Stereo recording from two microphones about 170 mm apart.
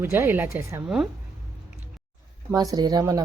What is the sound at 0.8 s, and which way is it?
Speech, 5° right (ahead or behind).